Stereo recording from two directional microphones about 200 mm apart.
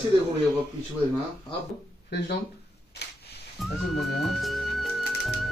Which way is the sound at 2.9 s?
55° left (ahead or behind).